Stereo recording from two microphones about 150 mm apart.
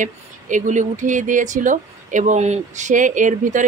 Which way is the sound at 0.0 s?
55° right (ahead or behind).